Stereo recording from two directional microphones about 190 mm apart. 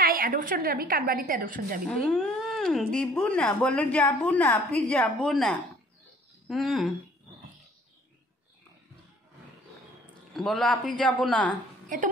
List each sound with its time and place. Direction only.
0.0 s a woman's voice: 50° right (ahead or behind)
2.0 s a woman's voice: 5° left (ahead or behind)
10.3 s a man's voice: centre (ahead or behind)
11.9 s a woman's voice: 45° right (ahead or behind)